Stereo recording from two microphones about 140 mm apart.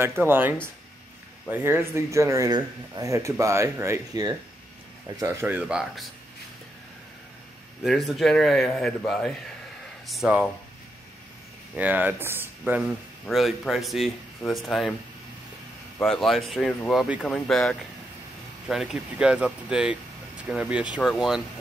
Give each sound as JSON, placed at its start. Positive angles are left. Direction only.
{"t": 0.0, "sound": "speech", "side_deg": -15}
{"t": 5.7, "sound": "speech", "side_deg": -5}
{"t": 7.8, "sound": "speech", "side_deg": 0}
{"t": 11.7, "sound": "speech", "side_deg": -10}
{"t": 13.3, "sound": "speech", "side_deg": 0}
{"t": 16.0, "sound": "speech", "side_deg": 0}